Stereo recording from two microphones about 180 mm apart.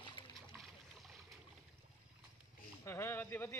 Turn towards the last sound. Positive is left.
turn(degrees=10)  # may be behind; listen again after turning